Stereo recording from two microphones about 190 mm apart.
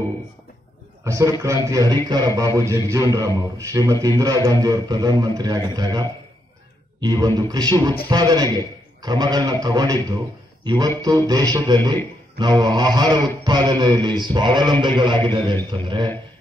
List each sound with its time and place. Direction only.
1.0 s a man's voice: 15° right (ahead or behind)